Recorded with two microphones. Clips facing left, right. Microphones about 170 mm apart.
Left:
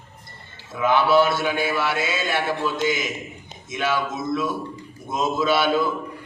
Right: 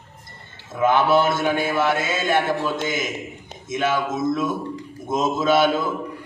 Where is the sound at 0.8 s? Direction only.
50° right (ahead or behind).